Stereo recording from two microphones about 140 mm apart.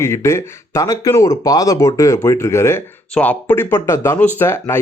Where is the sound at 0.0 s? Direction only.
20° left (ahead or behind).